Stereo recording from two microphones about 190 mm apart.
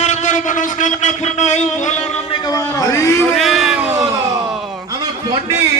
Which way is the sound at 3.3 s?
Centre (ahead or behind).